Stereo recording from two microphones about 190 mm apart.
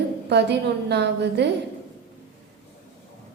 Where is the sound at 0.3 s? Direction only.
65° right (ahead or behind).